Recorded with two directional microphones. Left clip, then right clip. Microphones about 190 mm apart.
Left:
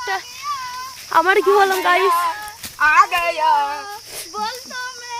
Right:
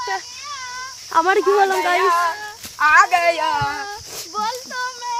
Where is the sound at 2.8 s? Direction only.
60° right (ahead or behind).